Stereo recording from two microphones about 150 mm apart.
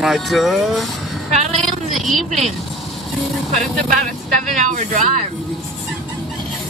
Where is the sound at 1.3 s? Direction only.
50° right (ahead or behind).